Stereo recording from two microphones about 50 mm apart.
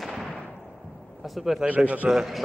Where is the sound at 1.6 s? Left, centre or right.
Right.